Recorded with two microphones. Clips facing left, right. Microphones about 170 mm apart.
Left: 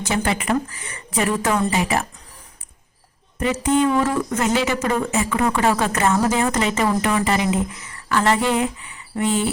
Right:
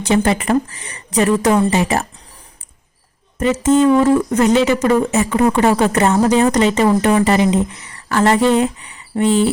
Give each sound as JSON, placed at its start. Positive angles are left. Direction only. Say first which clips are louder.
{"t": 0.3, "sound": "speech", "louder": "right 5 dB", "side_deg": -40}
{"t": 1.5, "sound": "speech", "louder": "right 6 dB", "side_deg": -25}
{"t": 3.3, "sound": "speech", "louder": "right 5 dB", "side_deg": -45}